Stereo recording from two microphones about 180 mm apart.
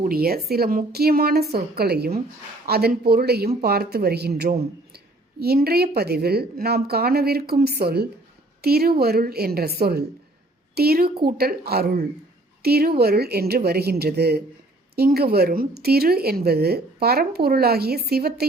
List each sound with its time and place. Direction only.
0.0 s a woman's voice: 55° right (ahead or behind)